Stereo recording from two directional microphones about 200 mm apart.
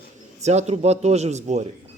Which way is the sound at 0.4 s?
35° right (ahead or behind).